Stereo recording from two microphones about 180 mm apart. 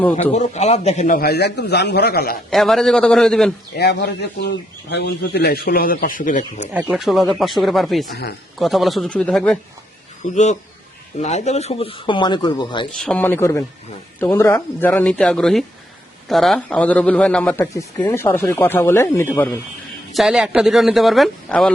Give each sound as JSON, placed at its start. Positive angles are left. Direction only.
{"t": 0.3, "sound": "speech", "side_deg": 35}
{"t": 2.5, "sound": "speech", "side_deg": 0}
{"t": 3.8, "sound": "speech", "side_deg": 65}
{"t": 6.7, "sound": "speech", "side_deg": -5}
{"t": 8.1, "sound": "speech", "side_deg": 65}
{"t": 8.5, "sound": "speech", "side_deg": 0}
{"t": 10.3, "sound": "a man's voice", "side_deg": 40}
{"t": 13.0, "sound": "speech", "side_deg": 5}
{"t": 20.1, "sound": "speech", "side_deg": 0}